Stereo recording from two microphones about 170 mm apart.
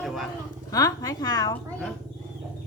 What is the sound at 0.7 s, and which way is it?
Speech, 20° left (ahead or behind).